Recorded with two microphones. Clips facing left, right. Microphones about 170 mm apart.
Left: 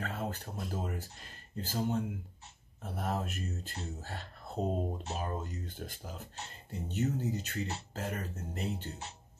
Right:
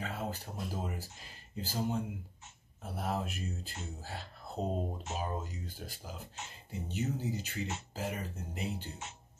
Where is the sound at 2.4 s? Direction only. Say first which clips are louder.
Left 1 dB; 35° left (ahead or behind).